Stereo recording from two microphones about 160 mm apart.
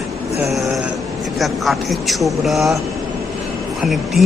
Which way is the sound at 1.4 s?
Centre (ahead or behind).